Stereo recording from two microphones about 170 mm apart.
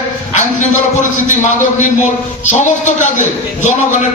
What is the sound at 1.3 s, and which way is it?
A man's voice, 50° left (ahead or behind).